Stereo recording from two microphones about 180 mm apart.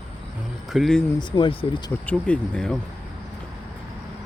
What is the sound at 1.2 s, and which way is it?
Speech, 25° left (ahead or behind).